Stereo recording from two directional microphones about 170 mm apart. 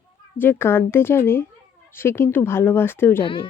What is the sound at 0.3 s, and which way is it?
Speech, 15° left (ahead or behind).